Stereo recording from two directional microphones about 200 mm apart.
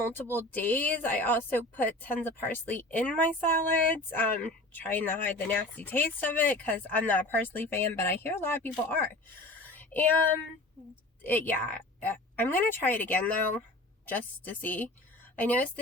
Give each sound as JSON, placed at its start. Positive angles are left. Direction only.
{"t": 0.0, "sound": "a woman's voice", "side_deg": 10}
{"t": 9.7, "sound": "a sound", "side_deg": 10}
{"t": 11.2, "sound": "a woman's voice", "side_deg": 10}